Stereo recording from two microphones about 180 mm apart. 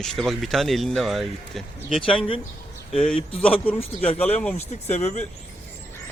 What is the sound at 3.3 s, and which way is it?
Speech, 30° left (ahead or behind).